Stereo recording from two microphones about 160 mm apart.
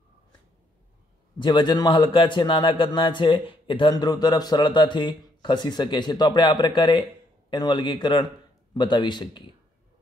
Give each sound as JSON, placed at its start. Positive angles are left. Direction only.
{"t": 1.4, "sound": "a man's voice", "side_deg": 30}